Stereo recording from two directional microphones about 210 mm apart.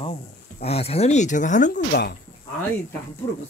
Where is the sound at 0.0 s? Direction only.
30° left (ahead or behind); by 2.1 s 50° left (ahead or behind).